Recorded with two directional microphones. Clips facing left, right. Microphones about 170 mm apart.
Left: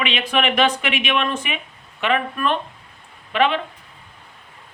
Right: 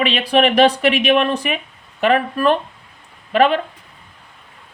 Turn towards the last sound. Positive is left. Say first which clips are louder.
# right 5 dB
turn(degrees=-45)  # may be behind; listen again after turning